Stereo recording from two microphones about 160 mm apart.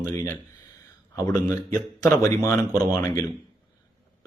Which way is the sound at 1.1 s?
20° left (ahead or behind).